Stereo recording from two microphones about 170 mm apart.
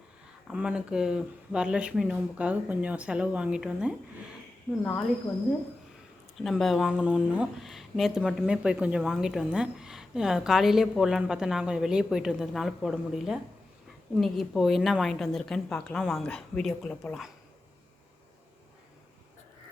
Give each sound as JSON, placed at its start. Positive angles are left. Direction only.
{"t": 0.4, "sound": "speech", "side_deg": -5}